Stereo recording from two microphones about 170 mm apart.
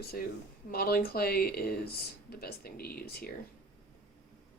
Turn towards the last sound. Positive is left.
turn(degrees=65)  # may be behind; listen again after turning